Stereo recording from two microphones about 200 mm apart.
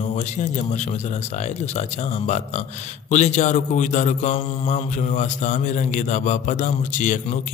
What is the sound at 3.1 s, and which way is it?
Speech, 35° left (ahead or behind).